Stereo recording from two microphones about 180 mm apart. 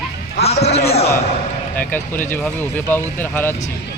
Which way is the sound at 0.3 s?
35° left (ahead or behind).